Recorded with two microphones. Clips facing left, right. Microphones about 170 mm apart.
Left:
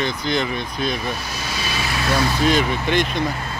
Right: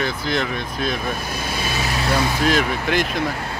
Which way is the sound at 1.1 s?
50° right (ahead or behind).